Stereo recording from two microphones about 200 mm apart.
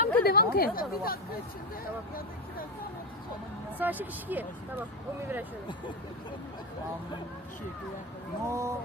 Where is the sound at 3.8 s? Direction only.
10° right (ahead or behind).